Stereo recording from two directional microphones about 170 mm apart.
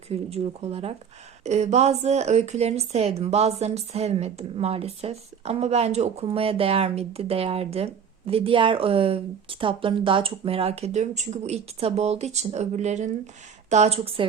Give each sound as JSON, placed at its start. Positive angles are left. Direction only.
{"t": 0.1, "sound": "speech", "side_deg": -35}